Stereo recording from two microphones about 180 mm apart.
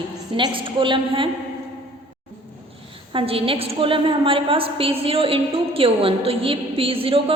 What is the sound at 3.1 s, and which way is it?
A woman's voice, 30° right (ahead or behind).